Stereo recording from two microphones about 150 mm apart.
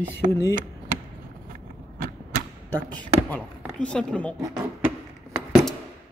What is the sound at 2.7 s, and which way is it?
A woman's voice, 10° left (ahead or behind).